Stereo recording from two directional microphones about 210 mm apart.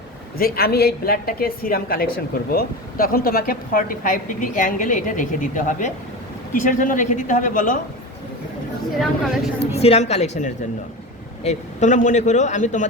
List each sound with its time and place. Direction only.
0.3 s a woman's voice: 45° left (ahead or behind)
9.6 s a man's voice: 30° left (ahead or behind)